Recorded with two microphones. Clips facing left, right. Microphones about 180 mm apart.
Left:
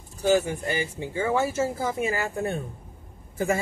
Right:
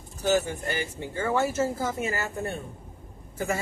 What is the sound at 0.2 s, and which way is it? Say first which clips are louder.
Speech: left 3 dB; 10° left (ahead or behind).